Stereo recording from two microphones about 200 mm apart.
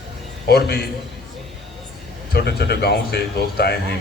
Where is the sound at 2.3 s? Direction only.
55° left (ahead or behind).